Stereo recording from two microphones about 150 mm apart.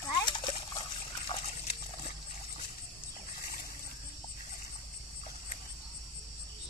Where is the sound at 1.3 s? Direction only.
40° left (ahead or behind).